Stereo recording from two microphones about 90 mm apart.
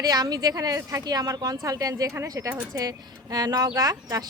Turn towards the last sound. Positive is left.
turn(degrees=-45)  # may be behind; listen again after turning